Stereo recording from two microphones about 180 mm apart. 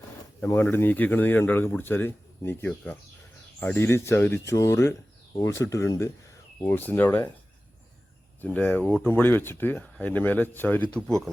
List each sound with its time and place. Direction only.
0.4 s speech: 15° left (ahead or behind)
8.4 s speech: 5° left (ahead or behind)